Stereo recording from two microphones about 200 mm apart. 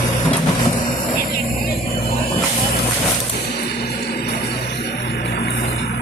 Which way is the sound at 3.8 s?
55° left (ahead or behind).